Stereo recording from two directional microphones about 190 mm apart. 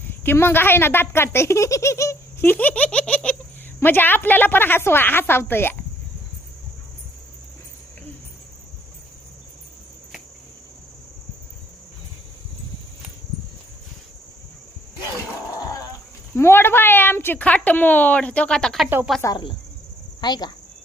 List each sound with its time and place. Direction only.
0.3 s speech: 10° left (ahead or behind)
16.3 s speech: 10° left (ahead or behind)
18.9 s speech: 10° right (ahead or behind)
19.2 s cricket: 25° left (ahead or behind)